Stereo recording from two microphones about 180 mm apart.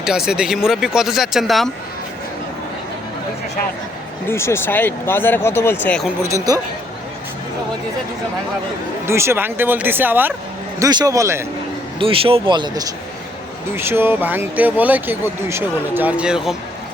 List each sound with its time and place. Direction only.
0.0 s speech: 5° right (ahead or behind)
4.3 s speech: 15° left (ahead or behind)
6.2 s speech: 20° right (ahead or behind)
9.0 s speech: 15° right (ahead or behind)
11.9 s speech: 30° right (ahead or behind)
13.7 s speech: 15° right (ahead or behind)